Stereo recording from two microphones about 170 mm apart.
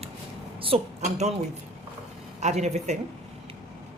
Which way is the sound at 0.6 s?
35° right (ahead or behind).